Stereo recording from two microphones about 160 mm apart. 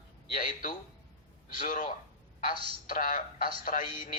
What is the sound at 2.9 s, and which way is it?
Speech, 60° left (ahead or behind).